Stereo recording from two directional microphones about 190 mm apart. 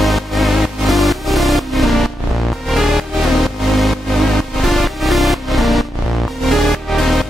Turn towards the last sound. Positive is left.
turn(degrees=0)  # may be behind; listen again after turning